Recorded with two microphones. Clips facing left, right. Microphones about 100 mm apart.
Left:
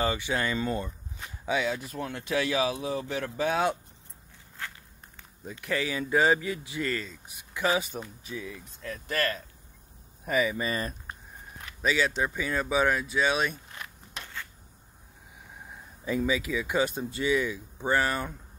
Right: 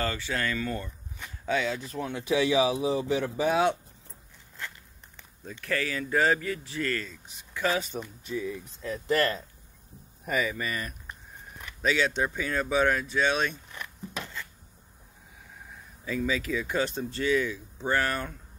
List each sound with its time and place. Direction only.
0.0 s speech: 15° left (ahead or behind)
1.4 s speech: 10° left (ahead or behind)
2.1 s speech: 10° right (ahead or behind)
5.4 s speech: 15° left (ahead or behind)
8.2 s speech: centre (ahead or behind)
8.8 s speech: 25° right (ahead or behind)
10.2 s speech: centre (ahead or behind)
10.6 s speech: 30° left (ahead or behind)
11.8 s speech: 5° left (ahead or behind)
16.1 s speech: 15° left (ahead or behind)